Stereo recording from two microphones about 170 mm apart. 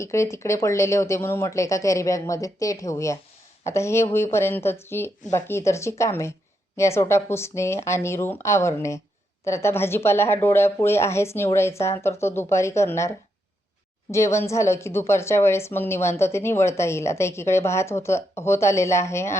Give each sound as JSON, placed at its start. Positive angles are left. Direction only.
{"t": 0.0, "sound": "a woman's voice", "side_deg": 15}